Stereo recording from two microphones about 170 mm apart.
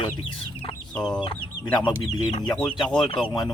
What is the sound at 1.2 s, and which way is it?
Speech, 30° left (ahead or behind).